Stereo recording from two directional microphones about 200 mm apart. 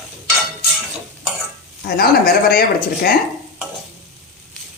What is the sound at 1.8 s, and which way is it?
Speech, 50° left (ahead or behind).